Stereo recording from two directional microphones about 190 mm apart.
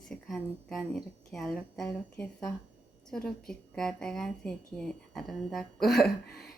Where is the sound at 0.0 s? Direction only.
Centre (ahead or behind).